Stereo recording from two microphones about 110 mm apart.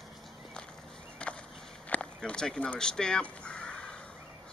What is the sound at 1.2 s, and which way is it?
Chop, 10° left (ahead or behind).